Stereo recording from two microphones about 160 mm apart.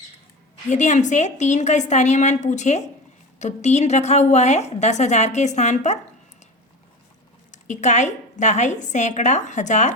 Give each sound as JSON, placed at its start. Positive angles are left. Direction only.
{"t": 0.7, "sound": "a woman's voice", "side_deg": 50}
{"t": 7.5, "sound": "a woman's voice", "side_deg": 50}